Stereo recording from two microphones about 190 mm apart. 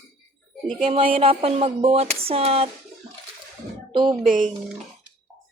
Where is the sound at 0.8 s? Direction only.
30° right (ahead or behind).